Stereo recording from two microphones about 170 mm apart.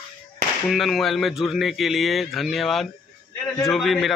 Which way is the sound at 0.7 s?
Centre (ahead or behind).